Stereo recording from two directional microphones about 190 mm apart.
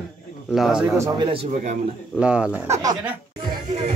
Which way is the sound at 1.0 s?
25° right (ahead or behind).